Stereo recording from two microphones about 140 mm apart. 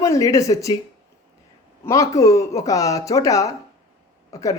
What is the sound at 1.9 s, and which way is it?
Speech, 25° left (ahead or behind).